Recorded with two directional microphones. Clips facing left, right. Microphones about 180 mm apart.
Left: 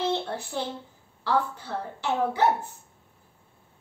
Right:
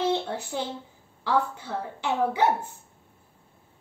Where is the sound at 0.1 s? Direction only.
15° right (ahead or behind).